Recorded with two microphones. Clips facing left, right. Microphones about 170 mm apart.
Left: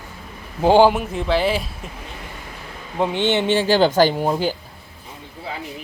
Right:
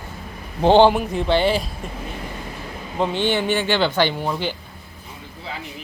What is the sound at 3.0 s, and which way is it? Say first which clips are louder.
Speech: left 1 dB; 20° left (ahead or behind).